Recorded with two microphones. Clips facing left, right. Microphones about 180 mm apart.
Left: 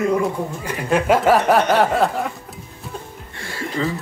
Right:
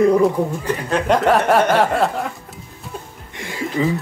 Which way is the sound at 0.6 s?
5° left (ahead or behind).